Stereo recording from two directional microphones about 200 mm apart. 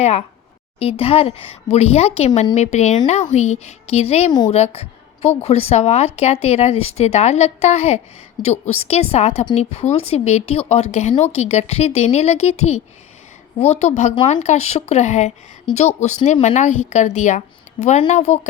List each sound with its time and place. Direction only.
0.0 s a woman's voice: 30° left (ahead or behind)